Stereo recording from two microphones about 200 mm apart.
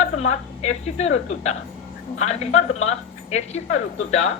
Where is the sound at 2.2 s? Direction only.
35° left (ahead or behind).